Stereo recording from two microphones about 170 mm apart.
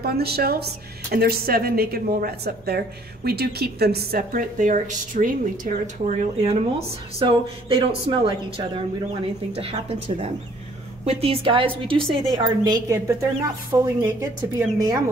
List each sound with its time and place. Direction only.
0.0 s a woman's voice: 65° right (ahead or behind); by 15.0 s 20° right (ahead or behind)